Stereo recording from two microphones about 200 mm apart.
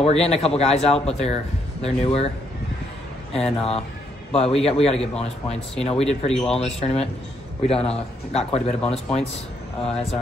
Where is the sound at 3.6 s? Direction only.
30° left (ahead or behind).